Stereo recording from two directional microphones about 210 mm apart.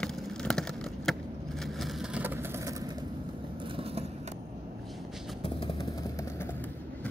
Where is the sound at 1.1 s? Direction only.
Centre (ahead or behind).